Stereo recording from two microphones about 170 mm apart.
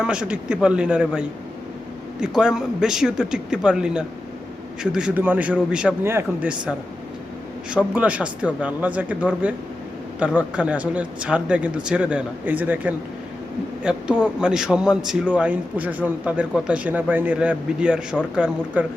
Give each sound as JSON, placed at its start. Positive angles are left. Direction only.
{"t": 0.0, "sound": "speech", "side_deg": -5}
{"t": 2.2, "sound": "a man's voice", "side_deg": -5}